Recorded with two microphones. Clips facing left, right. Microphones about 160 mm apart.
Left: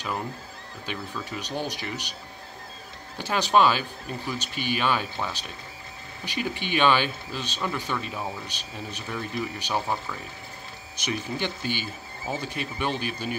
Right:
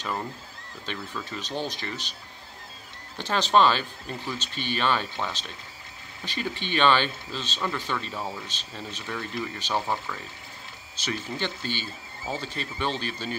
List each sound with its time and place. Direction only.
0.8 s speech: 10° left (ahead or behind)
3.2 s speech: 10° left (ahead or behind)
8.1 s speech: centre (ahead or behind)
8.5 s speech: 15° left (ahead or behind)